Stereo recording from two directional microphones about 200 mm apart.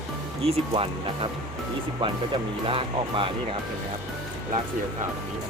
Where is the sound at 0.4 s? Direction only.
30° right (ahead or behind).